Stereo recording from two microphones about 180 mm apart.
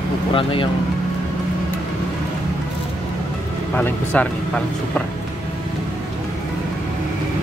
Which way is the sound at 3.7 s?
10° left (ahead or behind).